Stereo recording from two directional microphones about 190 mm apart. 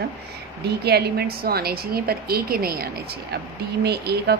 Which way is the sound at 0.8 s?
60° right (ahead or behind).